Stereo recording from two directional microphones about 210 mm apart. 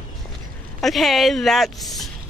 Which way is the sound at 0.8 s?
Centre (ahead or behind).